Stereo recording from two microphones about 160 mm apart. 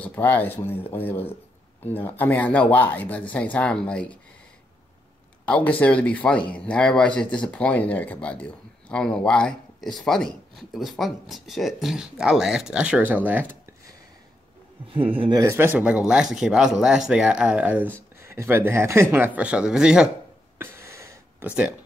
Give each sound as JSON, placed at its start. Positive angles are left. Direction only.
{"t": 0.0, "sound": "speech", "side_deg": 10}
{"t": 5.4, "sound": "speech", "side_deg": 10}
{"t": 15.0, "sound": "speech", "side_deg": -35}
{"t": 15.4, "sound": "speech", "side_deg": -15}
{"t": 20.5, "sound": "a sound", "side_deg": -15}